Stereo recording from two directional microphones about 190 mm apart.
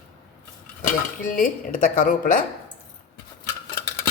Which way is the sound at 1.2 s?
45° left (ahead or behind).